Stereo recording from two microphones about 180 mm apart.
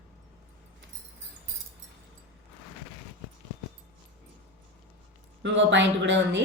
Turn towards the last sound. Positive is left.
turn(degrees=-90)